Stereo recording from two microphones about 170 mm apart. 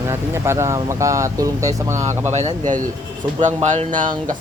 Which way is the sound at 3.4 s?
45° right (ahead or behind).